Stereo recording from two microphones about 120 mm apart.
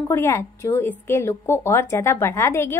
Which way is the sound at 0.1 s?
20° left (ahead or behind).